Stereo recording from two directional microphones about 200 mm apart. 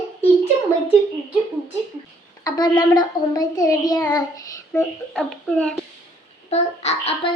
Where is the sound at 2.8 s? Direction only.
20° left (ahead or behind).